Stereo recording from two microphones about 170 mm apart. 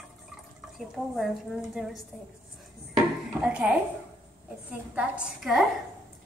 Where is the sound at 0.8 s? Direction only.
Centre (ahead or behind).